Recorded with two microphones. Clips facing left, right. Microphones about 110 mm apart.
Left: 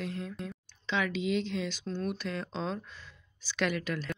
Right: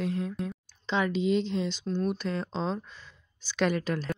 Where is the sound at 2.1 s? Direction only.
35° right (ahead or behind).